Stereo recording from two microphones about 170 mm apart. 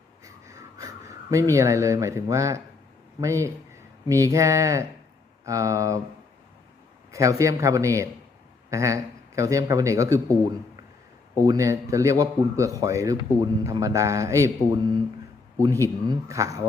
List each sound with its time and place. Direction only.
0.3 s wheeze: 20° right (ahead or behind)
1.5 s speech: 20° right (ahead or behind)
7.1 s speech: 20° right (ahead or behind)
11.3 s speech: 20° right (ahead or behind)
15.5 s speech: 20° right (ahead or behind)